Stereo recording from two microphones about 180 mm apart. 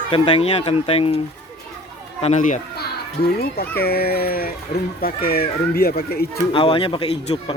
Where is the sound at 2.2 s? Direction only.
40° left (ahead or behind).